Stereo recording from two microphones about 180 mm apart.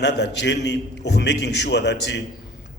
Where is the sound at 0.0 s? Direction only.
70° left (ahead or behind).